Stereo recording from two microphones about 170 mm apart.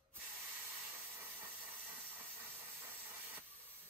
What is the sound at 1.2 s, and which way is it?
Steam, 10° right (ahead or behind).